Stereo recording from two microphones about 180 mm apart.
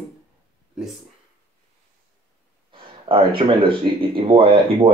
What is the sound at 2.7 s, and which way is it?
A man's voice, 30° right (ahead or behind).